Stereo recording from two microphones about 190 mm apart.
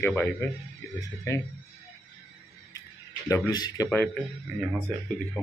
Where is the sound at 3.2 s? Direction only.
15° left (ahead or behind).